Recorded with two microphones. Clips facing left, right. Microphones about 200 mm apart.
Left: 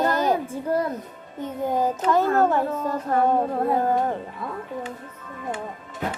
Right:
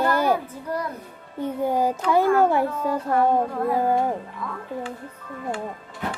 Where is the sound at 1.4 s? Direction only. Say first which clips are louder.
Right 1 dB; 10° right (ahead or behind).